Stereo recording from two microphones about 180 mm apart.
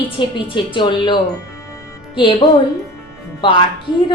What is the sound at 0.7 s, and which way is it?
Speech, 25° left (ahead or behind).